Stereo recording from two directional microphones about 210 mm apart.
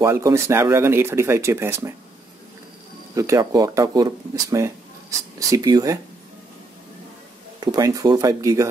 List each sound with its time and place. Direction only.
0.0 s speech: 15° right (ahead or behind)
3.2 s speech: 15° right (ahead or behind)
7.6 s speech: 20° right (ahead or behind)